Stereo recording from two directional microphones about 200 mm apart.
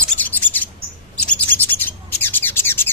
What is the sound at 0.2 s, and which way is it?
Bird, 10° left (ahead or behind).